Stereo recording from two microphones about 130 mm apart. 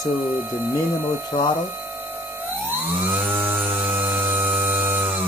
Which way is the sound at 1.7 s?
15° right (ahead or behind).